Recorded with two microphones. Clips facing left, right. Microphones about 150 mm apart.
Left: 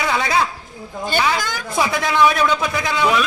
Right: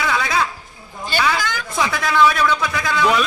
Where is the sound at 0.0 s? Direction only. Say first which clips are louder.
Left 1 dB; 30° left (ahead or behind).